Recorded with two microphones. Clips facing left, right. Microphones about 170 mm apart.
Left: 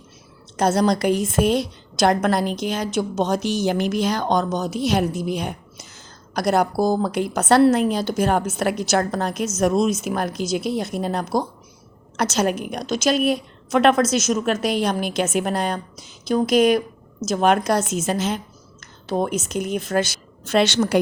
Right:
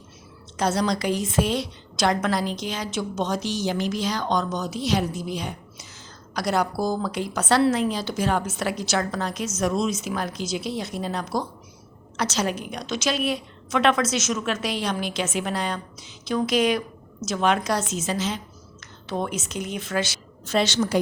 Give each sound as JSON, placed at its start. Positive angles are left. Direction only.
{"t": 0.5, "sound": "a woman's voice", "side_deg": 50}
{"t": 19.0, "sound": "a woman's voice", "side_deg": 40}
{"t": 20.4, "sound": "a woman's voice", "side_deg": 65}